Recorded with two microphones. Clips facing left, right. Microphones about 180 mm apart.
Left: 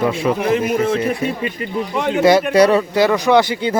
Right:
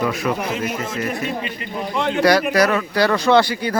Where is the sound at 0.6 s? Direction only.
60° left (ahead or behind).